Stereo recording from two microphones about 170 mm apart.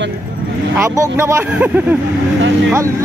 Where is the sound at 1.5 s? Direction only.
10° right (ahead or behind).